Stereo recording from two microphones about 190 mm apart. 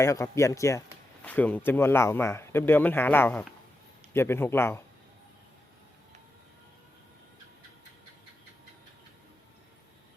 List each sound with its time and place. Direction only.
0.0 s speech: 15° left (ahead or behind)